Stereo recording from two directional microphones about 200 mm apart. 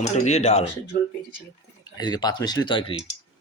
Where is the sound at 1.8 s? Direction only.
20° left (ahead or behind).